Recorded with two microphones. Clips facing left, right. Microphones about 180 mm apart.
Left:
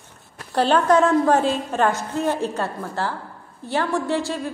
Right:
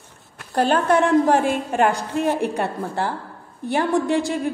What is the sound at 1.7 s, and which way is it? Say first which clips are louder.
A woman's voice: right 2 dB; 15° right (ahead or behind).